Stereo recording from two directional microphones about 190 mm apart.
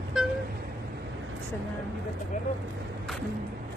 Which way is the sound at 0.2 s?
Centre (ahead or behind).